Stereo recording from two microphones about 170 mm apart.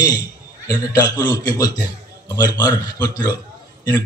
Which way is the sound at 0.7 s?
25° left (ahead or behind).